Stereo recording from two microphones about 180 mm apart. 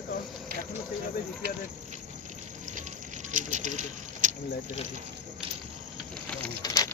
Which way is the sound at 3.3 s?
45° right (ahead or behind).